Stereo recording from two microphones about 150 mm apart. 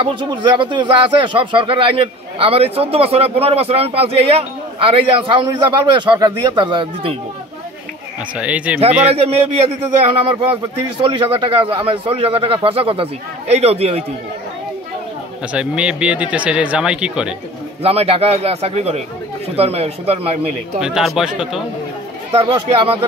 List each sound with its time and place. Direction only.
0.0 s speech: 30° right (ahead or behind)
8.4 s speech: 10° right (ahead or behind)
9.1 s speech: 40° right (ahead or behind)
15.5 s speech: 5° right (ahead or behind)
17.8 s speech: 40° right (ahead or behind)
20.8 s speech: 5° right (ahead or behind)
22.3 s speech: 35° right (ahead or behind)